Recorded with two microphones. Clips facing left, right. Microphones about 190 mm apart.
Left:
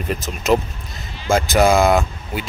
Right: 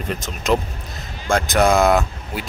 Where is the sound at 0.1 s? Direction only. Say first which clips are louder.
Left 2 dB; 5° left (ahead or behind).